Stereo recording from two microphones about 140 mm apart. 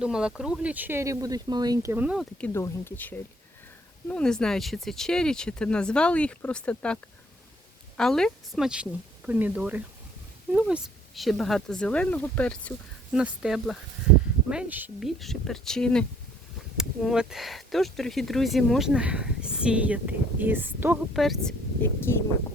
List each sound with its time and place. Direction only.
0.0 s speech: 5° right (ahead or behind)
2.4 s speech: 20° left (ahead or behind)
13.1 s speech: 5° right (ahead or behind)
15.0 s speech: centre (ahead or behind); by 21.0 s 15° right (ahead or behind)
21.1 s speech: centre (ahead or behind)